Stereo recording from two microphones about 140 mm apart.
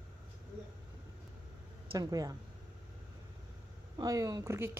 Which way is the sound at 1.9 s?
25° right (ahead or behind).